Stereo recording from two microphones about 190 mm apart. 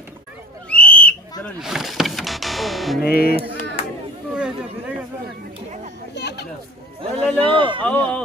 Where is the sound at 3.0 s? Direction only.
55° left (ahead or behind).